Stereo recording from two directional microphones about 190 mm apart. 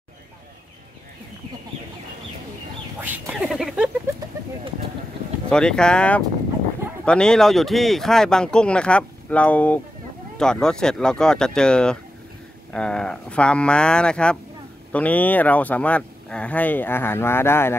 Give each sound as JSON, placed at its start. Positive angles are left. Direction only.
{"t": 3.0, "sound": "speech", "side_deg": -5}
{"t": 5.5, "sound": "speech", "side_deg": 5}